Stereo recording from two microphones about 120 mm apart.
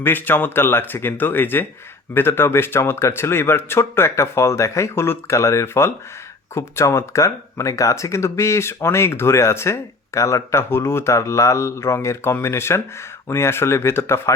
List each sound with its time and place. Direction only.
0.0 s speech: 15° left (ahead or behind)